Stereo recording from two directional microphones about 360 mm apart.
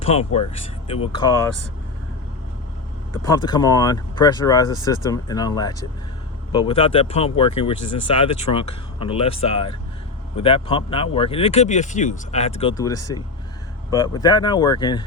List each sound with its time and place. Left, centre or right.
0.0 s speech: centre
3.2 s speech: centre
7.8 s speech: left
8.2 s speech: centre